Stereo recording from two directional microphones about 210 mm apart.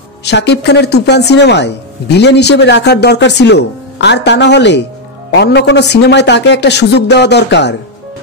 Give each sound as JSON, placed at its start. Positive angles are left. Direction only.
{"t": 0.2, "sound": "a woman's voice", "side_deg": 55}